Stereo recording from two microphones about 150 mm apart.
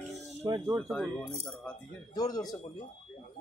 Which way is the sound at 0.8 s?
Centre (ahead or behind).